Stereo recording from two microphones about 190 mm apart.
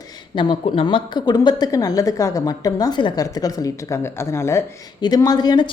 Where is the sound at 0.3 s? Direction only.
25° left (ahead or behind).